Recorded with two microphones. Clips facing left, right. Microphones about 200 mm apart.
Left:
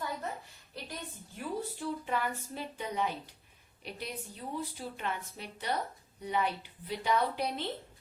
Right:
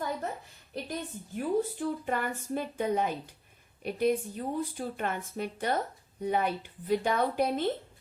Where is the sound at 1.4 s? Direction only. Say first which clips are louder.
Right 8 dB; 50° right (ahead or behind).